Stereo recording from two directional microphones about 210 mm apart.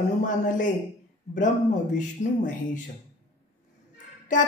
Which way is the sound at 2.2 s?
35° left (ahead or behind).